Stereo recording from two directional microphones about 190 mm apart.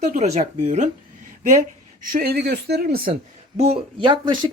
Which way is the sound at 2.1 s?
55° right (ahead or behind).